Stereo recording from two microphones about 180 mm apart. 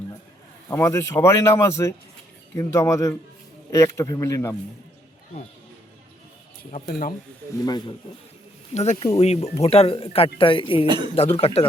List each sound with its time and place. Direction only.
0.7 s speech: 15° left (ahead or behind)
7.6 s speech: 25° left (ahead or behind)
8.7 s speech: 40° left (ahead or behind)
10.8 s speech: 25° right (ahead or behind)
11.1 s speech: 35° left (ahead or behind)